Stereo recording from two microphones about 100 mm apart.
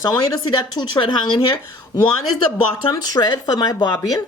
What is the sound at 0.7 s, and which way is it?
Speech, 55° left (ahead or behind).